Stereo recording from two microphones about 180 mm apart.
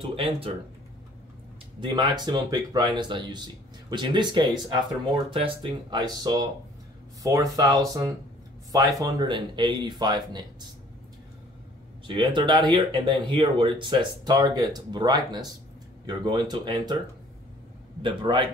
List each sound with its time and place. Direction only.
0.0 s speech: 30° right (ahead or behind)
1.8 s speech: 25° right (ahead or behind)
12.1 s speech: 25° right (ahead or behind)
18.0 s speech: 25° right (ahead or behind)